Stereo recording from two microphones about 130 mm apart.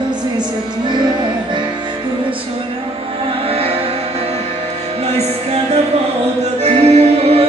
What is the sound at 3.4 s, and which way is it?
Music, 50° right (ahead or behind).